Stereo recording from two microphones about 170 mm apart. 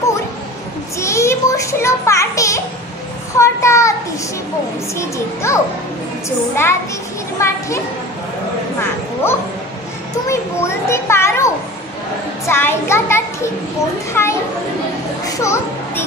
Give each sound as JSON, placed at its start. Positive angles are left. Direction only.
{"t": 0.9, "sound": "a child's voice", "side_deg": 15}
{"t": 3.3, "sound": "child singing", "side_deg": 15}
{"t": 4.9, "sound": "a child's voice", "side_deg": 15}
{"t": 8.8, "sound": "a sound", "side_deg": 15}
{"t": 10.2, "sound": "children playing", "side_deg": 15}
{"t": 12.4, "sound": "a child's voice", "side_deg": 15}
{"t": 15.2, "sound": "a sound", "side_deg": 20}